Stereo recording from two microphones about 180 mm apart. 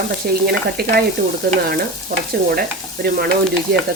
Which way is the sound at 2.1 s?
50° right (ahead or behind).